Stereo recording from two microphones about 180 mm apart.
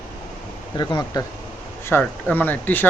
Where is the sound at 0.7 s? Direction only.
20° left (ahead or behind).